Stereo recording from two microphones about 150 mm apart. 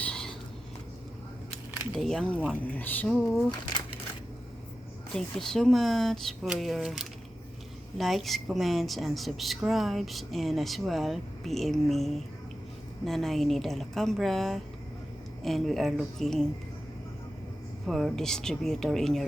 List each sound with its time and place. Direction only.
0.0 s a sound: 5° left (ahead or behind)
2.0 s a woman's voice: 5° left (ahead or behind)
3.5 s speech: 25° left (ahead or behind)
5.1 s a woman's voice: 5° left (ahead or behind)
17.8 s a woman's voice: centre (ahead or behind)